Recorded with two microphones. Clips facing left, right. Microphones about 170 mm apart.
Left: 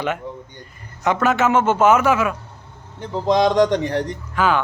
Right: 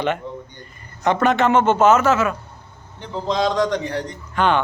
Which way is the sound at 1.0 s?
5° left (ahead or behind).